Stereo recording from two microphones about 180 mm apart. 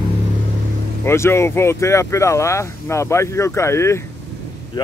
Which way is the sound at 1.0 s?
15° left (ahead or behind).